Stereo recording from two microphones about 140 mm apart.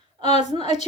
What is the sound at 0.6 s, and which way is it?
Speech, 50° left (ahead or behind).